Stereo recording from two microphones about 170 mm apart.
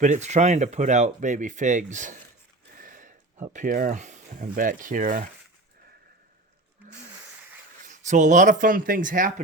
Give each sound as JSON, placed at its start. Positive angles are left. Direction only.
{"t": 0.0, "sound": "speech", "side_deg": -45}
{"t": 7.8, "sound": "speech", "side_deg": -50}